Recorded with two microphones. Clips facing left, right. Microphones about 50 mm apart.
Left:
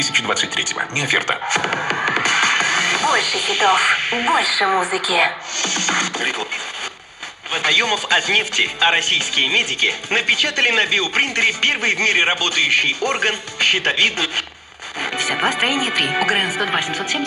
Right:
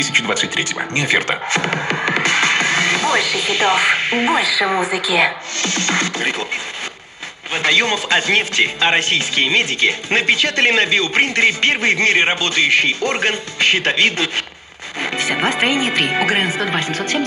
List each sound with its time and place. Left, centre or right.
0.9 s a man's voice: right
7.5 s a man's voice: right